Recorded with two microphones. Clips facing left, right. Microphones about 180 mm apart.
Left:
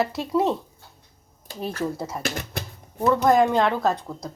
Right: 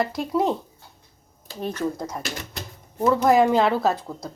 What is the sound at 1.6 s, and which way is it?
Speech, 5° left (ahead or behind).